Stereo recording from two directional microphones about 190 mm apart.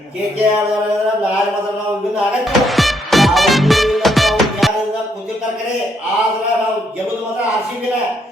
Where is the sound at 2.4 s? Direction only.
Centre (ahead or behind).